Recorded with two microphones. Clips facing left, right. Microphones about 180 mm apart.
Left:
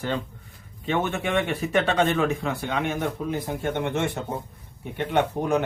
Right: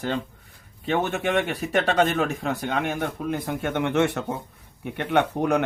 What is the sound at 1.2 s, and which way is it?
Speech, 40° right (ahead or behind).